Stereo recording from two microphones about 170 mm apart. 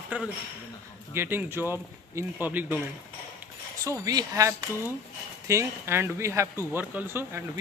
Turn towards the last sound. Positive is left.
turn(degrees=-15)  # may be behind; listen again after turning